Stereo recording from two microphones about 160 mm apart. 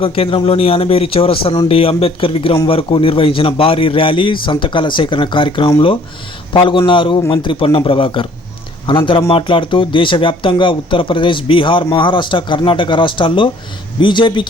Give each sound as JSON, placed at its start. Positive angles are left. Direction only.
{"t": 0.0, "sound": "a man's voice", "side_deg": 35}